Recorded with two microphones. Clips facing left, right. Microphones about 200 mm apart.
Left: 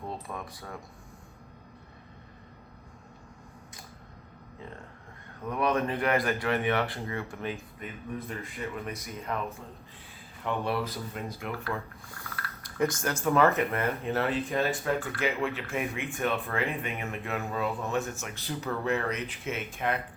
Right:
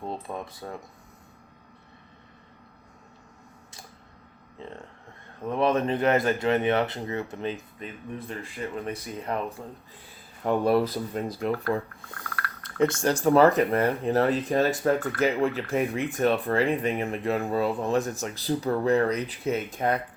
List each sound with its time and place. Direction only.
0.0 s speech: 25° right (ahead or behind)
5.4 s speech: 25° right (ahead or behind)
12.8 s speech: 30° right (ahead or behind)